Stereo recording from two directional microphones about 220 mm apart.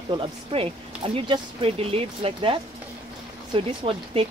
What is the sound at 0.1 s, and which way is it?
Speech, 25° right (ahead or behind).